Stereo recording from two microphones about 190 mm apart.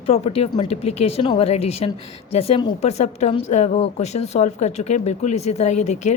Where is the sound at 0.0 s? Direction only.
30° left (ahead or behind).